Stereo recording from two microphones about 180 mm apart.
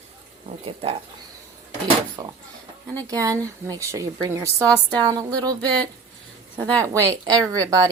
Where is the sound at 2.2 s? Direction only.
25° right (ahead or behind).